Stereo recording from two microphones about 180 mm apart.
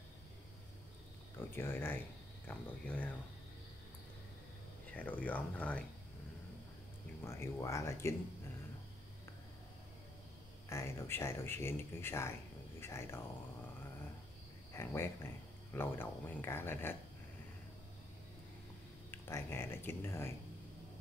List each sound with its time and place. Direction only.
1.5 s speech: 10° left (ahead or behind)
4.9 s speech: 10° left (ahead or behind)
7.2 s speech: 15° left (ahead or behind)
10.7 s speech: 15° left (ahead or behind)
14.7 s speech: 15° left (ahead or behind)
19.0 s speech: 15° left (ahead or behind)